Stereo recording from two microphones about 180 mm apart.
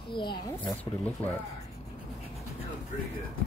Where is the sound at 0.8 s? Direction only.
10° left (ahead or behind).